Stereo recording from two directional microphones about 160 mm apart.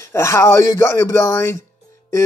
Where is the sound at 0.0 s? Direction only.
15° left (ahead or behind).